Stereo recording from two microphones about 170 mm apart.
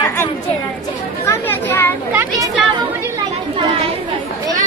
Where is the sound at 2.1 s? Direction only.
10° right (ahead or behind).